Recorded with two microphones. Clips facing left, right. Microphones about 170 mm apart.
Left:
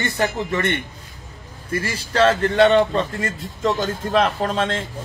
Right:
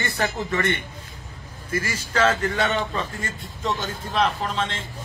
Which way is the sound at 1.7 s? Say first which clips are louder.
Left 3 dB; 30° left (ahead or behind).